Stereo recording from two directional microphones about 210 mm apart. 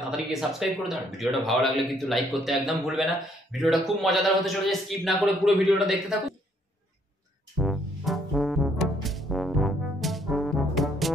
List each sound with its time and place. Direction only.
0.3 s speech: centre (ahead or behind)
7.5 s brass instrument: centre (ahead or behind)